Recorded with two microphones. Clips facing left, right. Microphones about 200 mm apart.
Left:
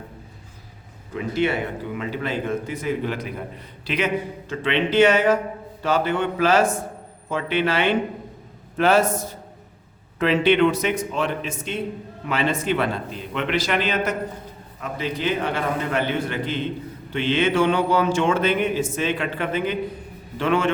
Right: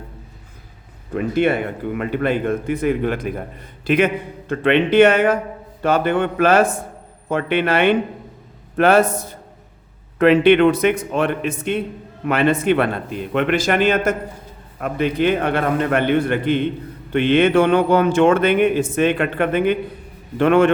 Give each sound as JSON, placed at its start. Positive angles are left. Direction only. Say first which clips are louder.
{"t": 1.1, "sound": "speech", "louder": "right 5 dB", "side_deg": -55}
{"t": 10.2, "sound": "speech", "louder": "right 6 dB", "side_deg": -55}